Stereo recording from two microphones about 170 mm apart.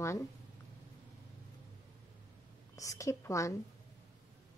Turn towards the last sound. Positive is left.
turn(degrees=20)  # may be behind; listen again after turning